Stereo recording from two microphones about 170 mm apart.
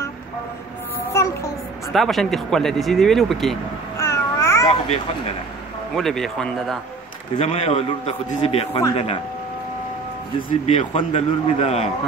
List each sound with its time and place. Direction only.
1.1 s child singing: 15° left (ahead or behind)
1.9 s speech: centre (ahead or behind)
4.0 s babbling: 15° left (ahead or behind)
4.6 s a sound: 35° left (ahead or behind)
5.9 s speech: centre (ahead or behind)
7.3 s speech: 35° left (ahead or behind)
10.7 s speech: 35° left (ahead or behind)